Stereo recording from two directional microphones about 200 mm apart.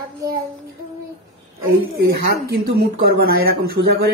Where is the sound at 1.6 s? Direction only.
50° right (ahead or behind).